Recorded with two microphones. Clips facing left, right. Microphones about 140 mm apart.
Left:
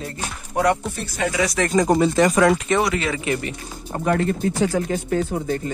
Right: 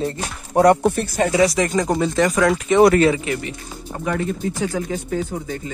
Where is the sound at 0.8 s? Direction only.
50° right (ahead or behind); by 1.6 s 30° right (ahead or behind).